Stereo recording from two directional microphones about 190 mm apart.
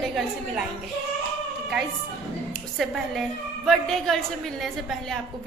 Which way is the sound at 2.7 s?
Centre (ahead or behind).